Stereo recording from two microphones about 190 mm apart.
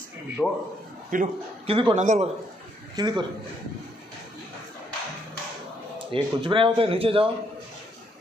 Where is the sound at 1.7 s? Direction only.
30° right (ahead or behind).